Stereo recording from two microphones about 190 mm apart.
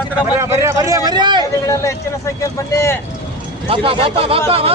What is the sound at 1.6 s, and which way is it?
Speech, 15° left (ahead or behind).